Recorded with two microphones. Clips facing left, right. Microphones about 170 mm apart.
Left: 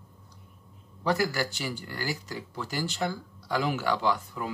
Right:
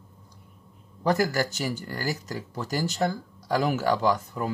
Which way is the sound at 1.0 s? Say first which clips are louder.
Right 3 dB; 45° right (ahead or behind).